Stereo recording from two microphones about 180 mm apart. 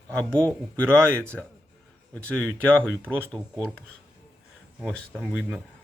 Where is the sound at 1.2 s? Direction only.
10° left (ahead or behind).